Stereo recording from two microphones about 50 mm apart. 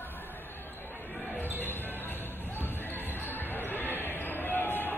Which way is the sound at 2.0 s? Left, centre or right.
Left.